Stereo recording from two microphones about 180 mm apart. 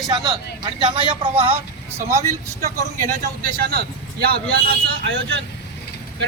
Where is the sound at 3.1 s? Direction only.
50° right (ahead or behind).